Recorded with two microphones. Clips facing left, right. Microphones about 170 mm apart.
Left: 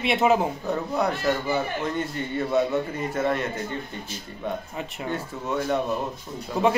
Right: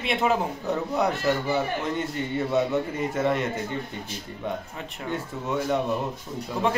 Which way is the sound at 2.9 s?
20° right (ahead or behind).